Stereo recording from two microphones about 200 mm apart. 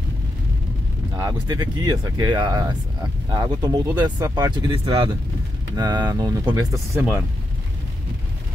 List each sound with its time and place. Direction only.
1.1 s speech: 20° right (ahead or behind)